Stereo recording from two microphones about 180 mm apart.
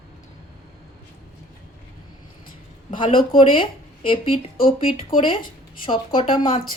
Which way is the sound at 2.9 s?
30° left (ahead or behind).